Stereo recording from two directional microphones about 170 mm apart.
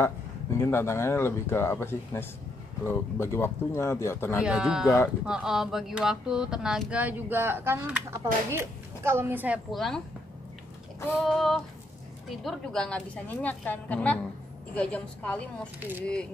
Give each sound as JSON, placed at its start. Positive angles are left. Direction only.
{"t": 0.0, "sound": "speech", "side_deg": 15}
{"t": 4.4, "sound": "speech", "side_deg": -5}
{"t": 4.8, "sound": "speech", "side_deg": 15}
{"t": 5.2, "sound": "speech", "side_deg": -5}
{"t": 11.1, "sound": "speech", "side_deg": 0}